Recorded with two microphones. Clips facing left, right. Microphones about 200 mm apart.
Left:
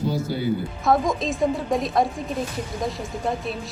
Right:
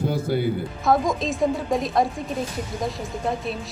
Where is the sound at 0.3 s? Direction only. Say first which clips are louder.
Right 4 dB; 55° right (ahead or behind).